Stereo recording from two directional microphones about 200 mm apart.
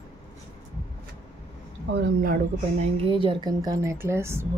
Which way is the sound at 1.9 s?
65° right (ahead or behind).